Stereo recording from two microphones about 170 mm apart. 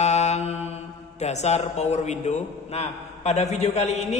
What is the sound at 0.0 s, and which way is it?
Mantra, 40° left (ahead or behind).